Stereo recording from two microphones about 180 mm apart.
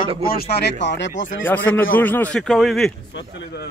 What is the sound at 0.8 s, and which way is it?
Speech, 75° left (ahead or behind).